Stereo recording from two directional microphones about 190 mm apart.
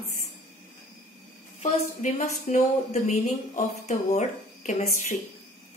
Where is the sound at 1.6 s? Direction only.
40° left (ahead or behind).